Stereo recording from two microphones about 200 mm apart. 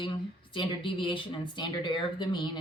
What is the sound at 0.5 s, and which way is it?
Speech, 25° left (ahead or behind).